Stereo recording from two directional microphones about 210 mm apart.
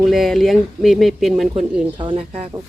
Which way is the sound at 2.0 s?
25° right (ahead or behind).